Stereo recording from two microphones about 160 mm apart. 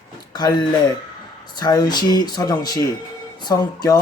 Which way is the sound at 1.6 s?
25° left (ahead or behind).